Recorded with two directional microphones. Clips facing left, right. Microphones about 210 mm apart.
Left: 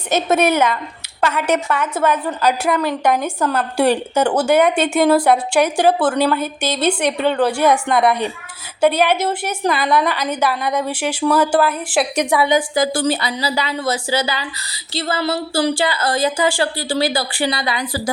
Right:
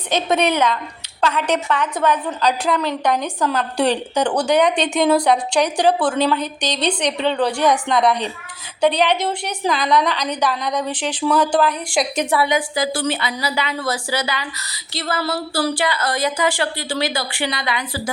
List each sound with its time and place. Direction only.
0.1 s a woman's voice: 5° left (ahead or behind)
12.7 s speech: 45° left (ahead or behind)
13.7 s speech: 25° left (ahead or behind)